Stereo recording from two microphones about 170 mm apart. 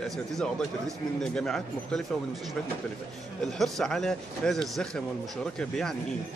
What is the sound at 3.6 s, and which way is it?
A man's voice, centre (ahead or behind).